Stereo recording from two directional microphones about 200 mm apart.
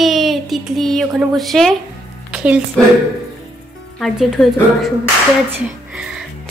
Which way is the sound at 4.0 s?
Centre (ahead or behind).